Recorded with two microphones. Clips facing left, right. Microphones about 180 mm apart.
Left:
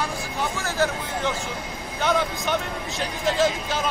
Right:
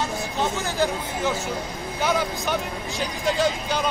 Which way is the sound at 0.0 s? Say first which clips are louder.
Right 2 dB; 20° right (ahead or behind).